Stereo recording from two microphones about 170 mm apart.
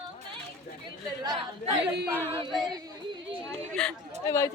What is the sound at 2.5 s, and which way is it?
Speech, centre (ahead or behind).